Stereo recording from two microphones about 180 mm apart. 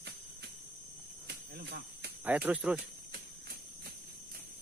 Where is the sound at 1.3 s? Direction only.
70° right (ahead or behind).